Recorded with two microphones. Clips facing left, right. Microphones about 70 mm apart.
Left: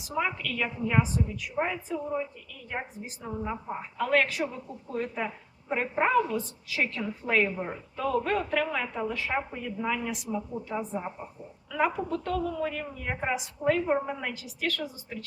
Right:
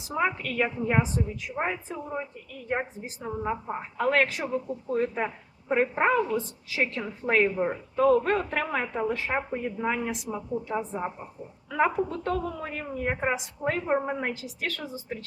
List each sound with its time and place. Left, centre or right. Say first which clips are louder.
0.0 s a woman's voice: right 3 dB; right
3.9 s a woman's voice: right 1 dB; right
13.1 s a woman's voice: right 2 dB; right